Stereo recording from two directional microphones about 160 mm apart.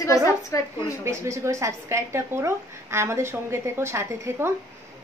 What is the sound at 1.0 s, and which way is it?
A woman's voice, 15° right (ahead or behind).